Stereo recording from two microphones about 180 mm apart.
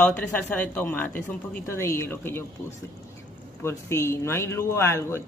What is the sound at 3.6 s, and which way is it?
Speech, 15° left (ahead or behind).